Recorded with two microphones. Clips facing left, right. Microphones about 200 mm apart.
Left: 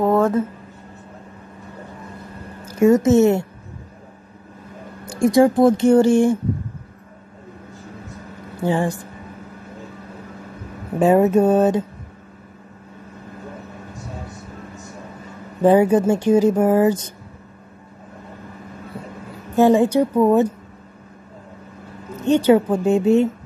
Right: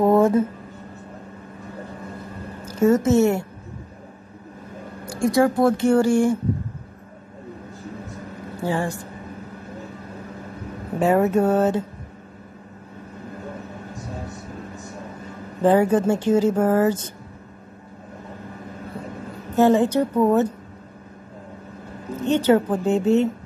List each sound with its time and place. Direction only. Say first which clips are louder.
0.0 s a sound: right 1 dB; 15° right (ahead or behind)
2.6 s a woman's voice: left 3 dB; 10° left (ahead or behind)
5.0 s speech: left 4 dB; 20° left (ahead or behind)
8.6 s speech: left 4 dB; 20° left (ahead or behind)
11.0 s speech: left 4 dB; 20° left (ahead or behind)
15.6 s speech: left 3 dB; 15° left (ahead or behind)
19.5 s speech: left 2 dB; 15° left (ahead or behind)
22.2 s speech: left 3 dB; 15° left (ahead or behind)